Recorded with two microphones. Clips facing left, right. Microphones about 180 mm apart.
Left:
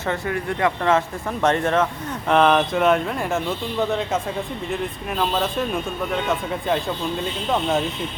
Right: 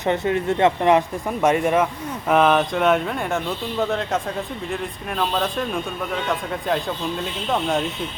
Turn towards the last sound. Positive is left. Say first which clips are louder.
# left 1 dB
turn(degrees=0)  # may be behind; listen again after turning